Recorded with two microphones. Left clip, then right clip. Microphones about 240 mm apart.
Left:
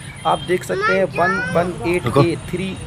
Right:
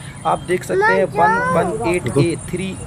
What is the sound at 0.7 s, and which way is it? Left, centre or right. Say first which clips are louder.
Speech: right 4 dB; right.